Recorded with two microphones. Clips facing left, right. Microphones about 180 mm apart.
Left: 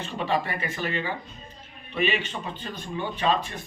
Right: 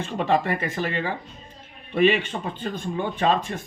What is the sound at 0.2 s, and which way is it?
Speech, 50° right (ahead or behind).